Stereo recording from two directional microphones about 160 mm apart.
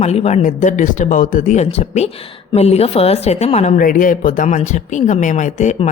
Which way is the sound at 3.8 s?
55° left (ahead or behind).